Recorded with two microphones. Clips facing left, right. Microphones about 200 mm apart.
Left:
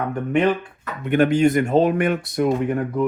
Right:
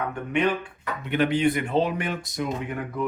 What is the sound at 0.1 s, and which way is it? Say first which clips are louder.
Speech: left 7 dB; 40° left (ahead or behind).